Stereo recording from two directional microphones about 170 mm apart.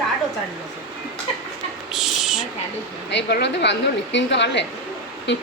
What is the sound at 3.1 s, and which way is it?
A woman's voice, 85° left.